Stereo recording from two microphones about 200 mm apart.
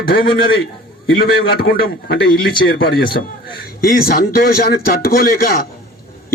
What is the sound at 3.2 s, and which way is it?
A man's voice, 45° left (ahead or behind).